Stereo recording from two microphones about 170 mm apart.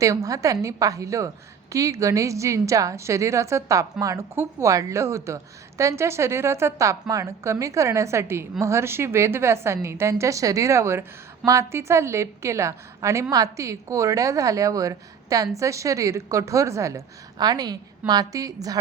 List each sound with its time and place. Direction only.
0.0 s a woman's voice: 20° right (ahead or behind)